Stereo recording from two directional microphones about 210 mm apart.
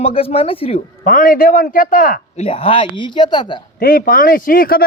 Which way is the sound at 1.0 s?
40° left (ahead or behind).